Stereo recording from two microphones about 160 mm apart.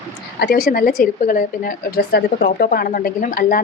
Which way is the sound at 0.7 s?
60° left (ahead or behind).